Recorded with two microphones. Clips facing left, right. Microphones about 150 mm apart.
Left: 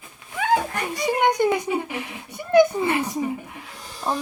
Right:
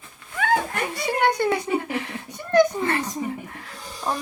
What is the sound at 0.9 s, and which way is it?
Speech, 15° left (ahead or behind).